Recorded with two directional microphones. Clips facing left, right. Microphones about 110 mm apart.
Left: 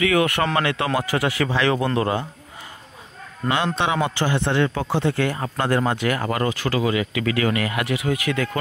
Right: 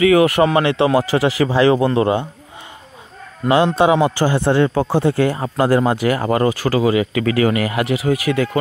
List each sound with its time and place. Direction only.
0.0 s speech: 25° right (ahead or behind)
3.4 s a man's voice: 30° right (ahead or behind)
5.1 s speech: 25° right (ahead or behind)